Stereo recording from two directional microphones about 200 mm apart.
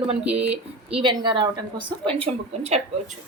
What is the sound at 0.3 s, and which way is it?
Speech, 30° right (ahead or behind).